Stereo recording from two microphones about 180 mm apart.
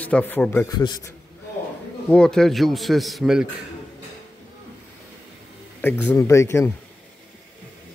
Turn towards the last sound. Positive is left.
turn(degrees=15)  # may be behind; listen again after turning